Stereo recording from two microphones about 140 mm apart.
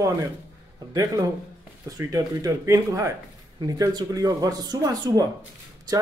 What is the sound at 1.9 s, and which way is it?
Speech, 25° right (ahead or behind).